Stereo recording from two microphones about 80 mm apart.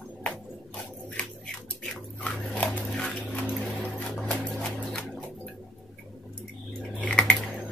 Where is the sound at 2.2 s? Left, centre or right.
Centre.